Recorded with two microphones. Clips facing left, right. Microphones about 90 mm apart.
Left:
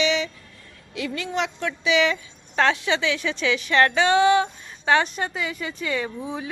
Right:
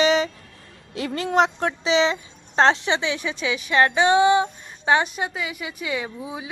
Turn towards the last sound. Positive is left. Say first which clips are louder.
# left 2 dB
turn(degrees=-10)  # may be behind; listen again after turning